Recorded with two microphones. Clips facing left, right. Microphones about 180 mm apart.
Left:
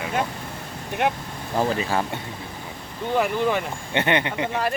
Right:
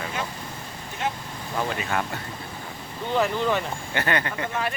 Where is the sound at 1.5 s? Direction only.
30° left (ahead or behind).